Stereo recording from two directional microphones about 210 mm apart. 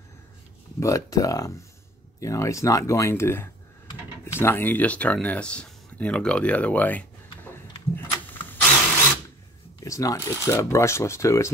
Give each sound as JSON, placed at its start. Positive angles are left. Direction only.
{"t": 0.7, "sound": "speech", "side_deg": 15}
{"t": 7.5, "sound": "vehicle", "side_deg": 10}
{"t": 9.8, "sound": "speech", "side_deg": 15}